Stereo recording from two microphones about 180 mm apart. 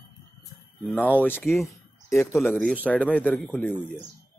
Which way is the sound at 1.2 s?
10° left (ahead or behind).